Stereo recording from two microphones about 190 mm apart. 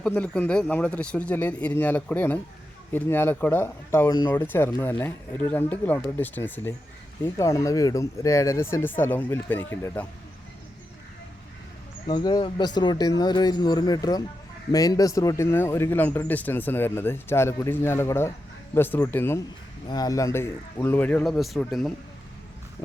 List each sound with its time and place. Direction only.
0.0 s speech: 5° left (ahead or behind)
12.0 s speech: 25° left (ahead or behind); by 21.9 s centre (ahead or behind)